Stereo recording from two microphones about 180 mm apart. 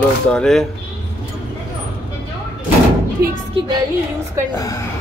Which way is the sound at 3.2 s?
55° right (ahead or behind).